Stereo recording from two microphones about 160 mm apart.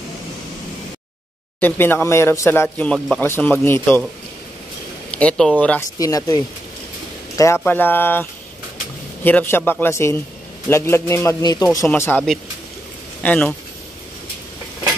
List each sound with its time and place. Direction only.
1.6 s speech: 15° left (ahead or behind)
5.1 s speech: 5° left (ahead or behind)
5.9 s speech: 20° left (ahead or behind)
13.2 s speech: 10° left (ahead or behind)